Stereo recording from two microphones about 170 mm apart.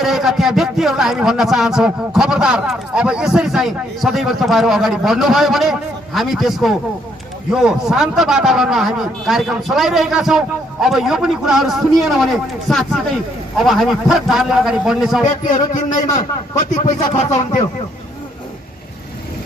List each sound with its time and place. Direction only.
0.0 s speech: centre (ahead or behind)
16.2 s speech: 45° left (ahead or behind)